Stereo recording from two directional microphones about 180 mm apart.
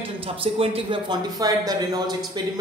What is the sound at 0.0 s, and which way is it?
A woman's voice, 30° right (ahead or behind).